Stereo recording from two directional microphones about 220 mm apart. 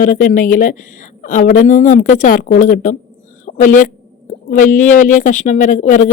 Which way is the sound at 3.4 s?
35° left (ahead or behind).